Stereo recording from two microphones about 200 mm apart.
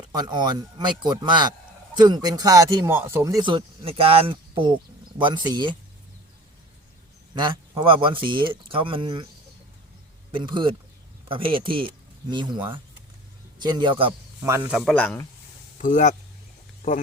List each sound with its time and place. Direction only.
0.1 s speech: 20° right (ahead or behind)
7.3 s speech: 20° right (ahead or behind)
10.3 s speech: 25° right (ahead or behind)
14.4 s speech: 10° right (ahead or behind)
14.9 s speech: 10° left (ahead or behind)
15.8 s speech: 40° left (ahead or behind)